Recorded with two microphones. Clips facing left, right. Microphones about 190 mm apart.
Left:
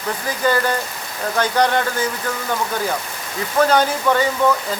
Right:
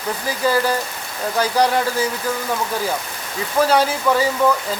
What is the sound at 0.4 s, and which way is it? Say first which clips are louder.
Speech: even; 5° right (ahead or behind).